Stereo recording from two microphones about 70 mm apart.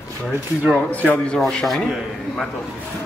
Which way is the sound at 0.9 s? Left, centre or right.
Left.